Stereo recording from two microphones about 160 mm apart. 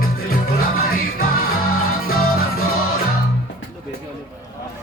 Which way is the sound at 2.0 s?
70° left (ahead or behind).